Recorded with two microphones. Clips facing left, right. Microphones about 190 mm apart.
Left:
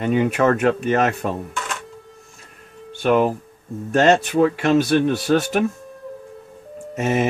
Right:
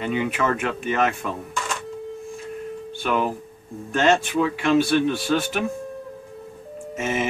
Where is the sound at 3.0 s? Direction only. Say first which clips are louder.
Left 7 dB; 45° left (ahead or behind).